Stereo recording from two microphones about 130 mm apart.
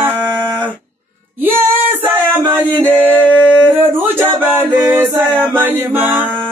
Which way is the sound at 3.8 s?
15° right (ahead or behind).